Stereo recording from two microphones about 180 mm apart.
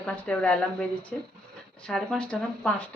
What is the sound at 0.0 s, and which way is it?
Speech, 5° left (ahead or behind).